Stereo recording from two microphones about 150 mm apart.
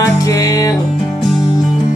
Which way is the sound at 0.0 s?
20° left (ahead or behind).